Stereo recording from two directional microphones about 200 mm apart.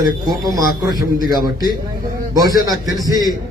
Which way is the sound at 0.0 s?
20° right (ahead or behind).